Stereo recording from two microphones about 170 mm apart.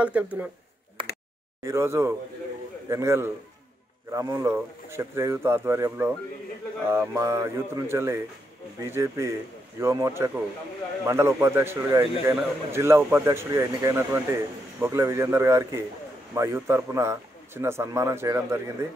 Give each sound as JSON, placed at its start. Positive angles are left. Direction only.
{"t": 0.2, "sound": "a man's voice", "side_deg": -10}
{"t": 1.6, "sound": "a man's voice", "side_deg": -15}